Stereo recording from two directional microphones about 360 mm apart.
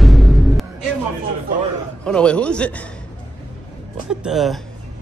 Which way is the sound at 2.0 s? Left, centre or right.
Centre.